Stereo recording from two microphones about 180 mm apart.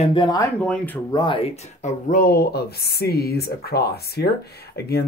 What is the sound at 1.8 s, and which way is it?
Speech, 50° left (ahead or behind).